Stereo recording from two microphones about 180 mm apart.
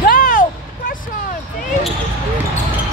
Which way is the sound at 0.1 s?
50° left (ahead or behind).